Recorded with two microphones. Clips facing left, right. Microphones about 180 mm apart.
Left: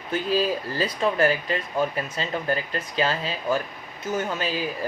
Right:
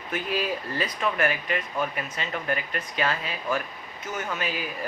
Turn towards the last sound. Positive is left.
turn(degrees=30)  # may be behind; listen again after turning